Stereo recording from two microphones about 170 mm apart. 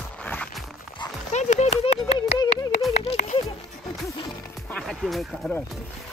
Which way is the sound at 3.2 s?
55° left (ahead or behind).